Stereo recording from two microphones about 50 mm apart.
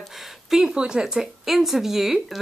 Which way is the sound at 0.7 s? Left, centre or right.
Centre.